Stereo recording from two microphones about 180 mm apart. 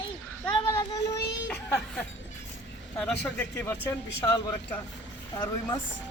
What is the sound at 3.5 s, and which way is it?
Speech, 10° left (ahead or behind).